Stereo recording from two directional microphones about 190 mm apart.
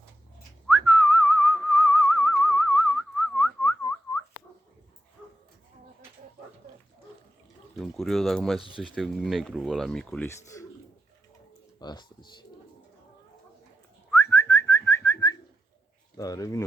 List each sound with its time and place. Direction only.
0.7 s whistling: 5° left (ahead or behind)
7.8 s speech: centre (ahead or behind)
10.2 s a man's voice: 15° left (ahead or behind)
11.8 s speech: 20° left (ahead or behind)
14.1 s whistling: 15° left (ahead or behind)
16.1 s speech: 20° left (ahead or behind)